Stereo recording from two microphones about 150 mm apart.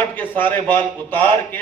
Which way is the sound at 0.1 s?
10° left (ahead or behind).